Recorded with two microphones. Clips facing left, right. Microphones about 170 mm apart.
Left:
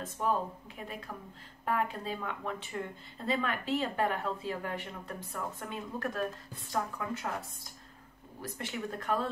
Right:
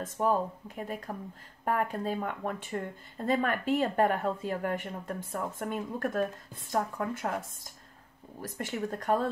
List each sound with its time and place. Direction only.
0.0 s speech: 45° right (ahead or behind)